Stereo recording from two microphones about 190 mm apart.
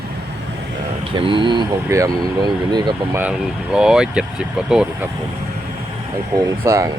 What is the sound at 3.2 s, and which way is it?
Speech, 5° right (ahead or behind).